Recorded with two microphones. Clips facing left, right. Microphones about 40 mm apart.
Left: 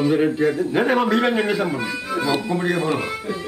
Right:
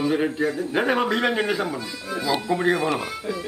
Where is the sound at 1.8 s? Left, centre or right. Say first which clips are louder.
Left 6 dB; left.